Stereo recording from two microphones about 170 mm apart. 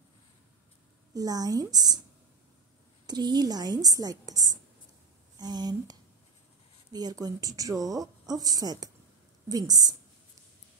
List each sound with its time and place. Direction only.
1.1 s a woman's voice: 20° right (ahead or behind)
3.1 s a woman's voice: 25° right (ahead or behind)